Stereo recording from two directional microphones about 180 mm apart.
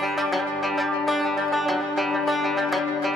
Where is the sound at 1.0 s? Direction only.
Centre (ahead or behind).